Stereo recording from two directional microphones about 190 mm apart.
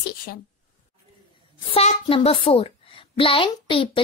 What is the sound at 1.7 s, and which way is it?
A woman's voice, 30° left (ahead or behind).